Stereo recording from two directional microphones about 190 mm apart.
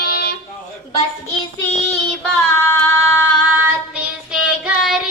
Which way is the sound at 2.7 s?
10° left (ahead or behind).